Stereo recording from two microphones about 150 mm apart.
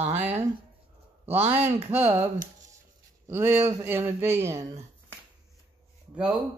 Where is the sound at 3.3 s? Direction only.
15° right (ahead or behind).